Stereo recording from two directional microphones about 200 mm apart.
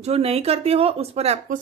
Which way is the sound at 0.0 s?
30° right (ahead or behind).